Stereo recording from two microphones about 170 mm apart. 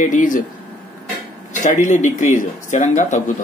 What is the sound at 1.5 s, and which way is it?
Speech, 45° left (ahead or behind).